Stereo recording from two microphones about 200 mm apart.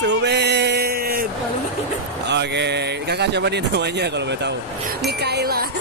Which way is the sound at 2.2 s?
60° right (ahead or behind).